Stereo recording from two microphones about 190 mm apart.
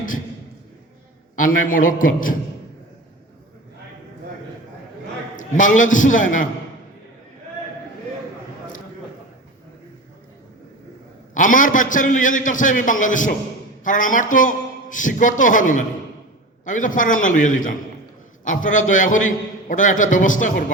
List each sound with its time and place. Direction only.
1.4 s a man's voice: 45° left (ahead or behind)
5.4 s a man's voice: 40° left (ahead or behind)
11.3 s a man's voice: 45° left (ahead or behind)